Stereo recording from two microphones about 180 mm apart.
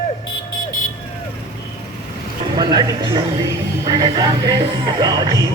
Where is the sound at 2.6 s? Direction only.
25° right (ahead or behind).